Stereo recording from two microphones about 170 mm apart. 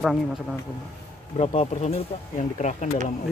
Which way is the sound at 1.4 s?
35° left (ahead or behind).